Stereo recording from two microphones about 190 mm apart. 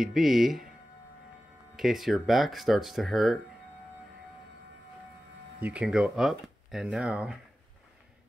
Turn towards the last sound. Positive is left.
turn(degrees=-5)  # may be behind; listen again after turning